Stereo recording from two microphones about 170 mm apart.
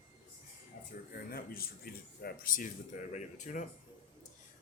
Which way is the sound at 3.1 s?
45° left (ahead or behind).